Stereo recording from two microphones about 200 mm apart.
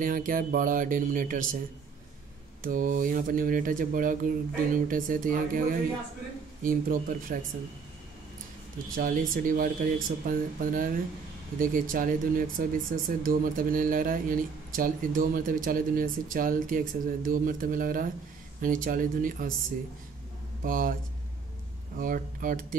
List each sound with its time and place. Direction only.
0.0 s speech: 45° right (ahead or behind)
2.6 s speech: 40° right (ahead or behind)
8.9 s speech: 45° right (ahead or behind)
20.6 s speech: 45° right (ahead or behind)
21.9 s speech: 45° right (ahead or behind)